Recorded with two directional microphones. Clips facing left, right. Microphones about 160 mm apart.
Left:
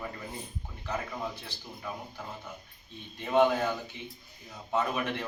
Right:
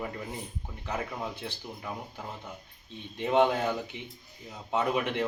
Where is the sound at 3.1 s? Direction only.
20° right (ahead or behind).